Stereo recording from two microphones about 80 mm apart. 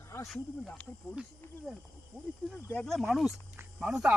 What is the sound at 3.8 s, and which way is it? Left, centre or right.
Speech, centre.